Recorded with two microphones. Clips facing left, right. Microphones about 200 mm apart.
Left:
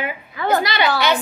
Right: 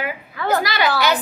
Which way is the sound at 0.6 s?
25° left (ahead or behind).